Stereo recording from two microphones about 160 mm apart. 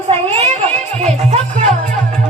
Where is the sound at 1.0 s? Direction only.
45° right (ahead or behind).